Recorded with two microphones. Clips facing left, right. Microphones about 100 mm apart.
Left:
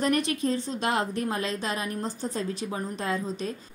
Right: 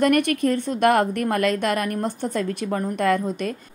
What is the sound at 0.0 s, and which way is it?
A woman's voice, 60° right (ahead or behind).